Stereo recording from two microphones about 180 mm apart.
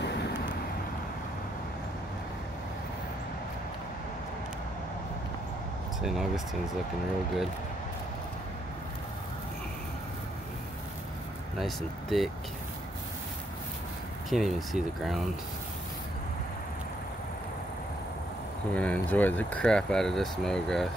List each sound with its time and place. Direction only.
0.0 s vehicle: 70° left (ahead or behind)
5.9 s speech: centre (ahead or behind)
11.5 s speech: centre (ahead or behind)
14.3 s speech: centre (ahead or behind)
18.7 s speech: 5° left (ahead or behind)